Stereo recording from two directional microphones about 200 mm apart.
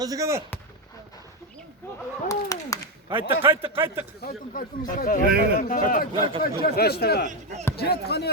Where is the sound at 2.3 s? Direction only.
15° left (ahead or behind).